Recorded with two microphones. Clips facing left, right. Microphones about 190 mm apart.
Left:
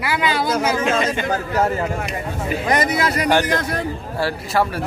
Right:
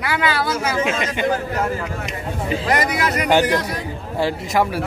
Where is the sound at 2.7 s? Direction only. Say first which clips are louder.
Left 2 dB; 25° left (ahead or behind).